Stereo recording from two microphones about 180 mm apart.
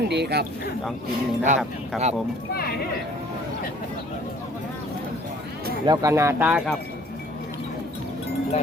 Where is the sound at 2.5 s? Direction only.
60° left (ahead or behind).